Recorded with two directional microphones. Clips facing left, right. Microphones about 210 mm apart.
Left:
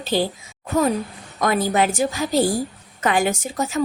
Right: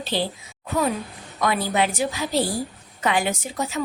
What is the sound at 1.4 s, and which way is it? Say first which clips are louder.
A woman's voice: left 3 dB; 45° left (ahead or behind).